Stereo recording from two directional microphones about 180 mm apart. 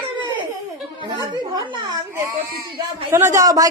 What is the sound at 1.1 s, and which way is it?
Speech, 20° right (ahead or behind).